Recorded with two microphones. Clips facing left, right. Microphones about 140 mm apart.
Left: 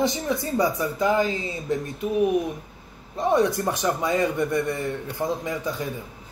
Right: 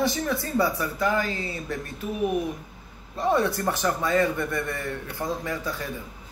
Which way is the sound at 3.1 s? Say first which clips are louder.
Left 2 dB; 20° left (ahead or behind).